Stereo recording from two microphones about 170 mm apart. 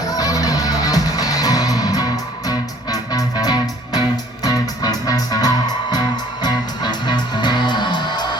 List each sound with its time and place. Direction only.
0.1 s music: 20° left (ahead or behind)